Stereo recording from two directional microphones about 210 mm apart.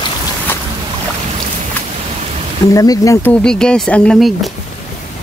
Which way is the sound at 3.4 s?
5° left (ahead or behind).